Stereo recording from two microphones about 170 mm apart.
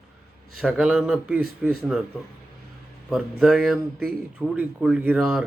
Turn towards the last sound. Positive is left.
turn(degrees=-5)  # may be behind; listen again after turning